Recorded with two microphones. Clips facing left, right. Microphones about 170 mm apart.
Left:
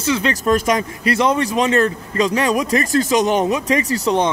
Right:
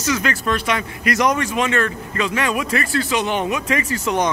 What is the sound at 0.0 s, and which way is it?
Speech, 30° left (ahead or behind).